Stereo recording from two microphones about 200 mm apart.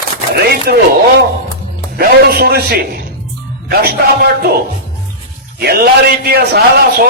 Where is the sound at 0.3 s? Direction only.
50° right (ahead or behind).